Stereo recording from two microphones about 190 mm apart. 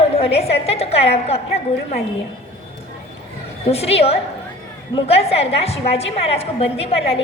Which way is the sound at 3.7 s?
30° left (ahead or behind).